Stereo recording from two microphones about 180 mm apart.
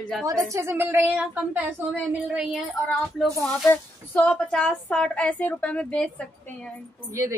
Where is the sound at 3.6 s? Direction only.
10° left (ahead or behind).